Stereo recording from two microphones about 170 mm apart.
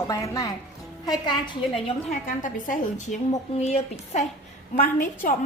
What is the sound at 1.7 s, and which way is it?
A woman's voice, 45° left (ahead or behind).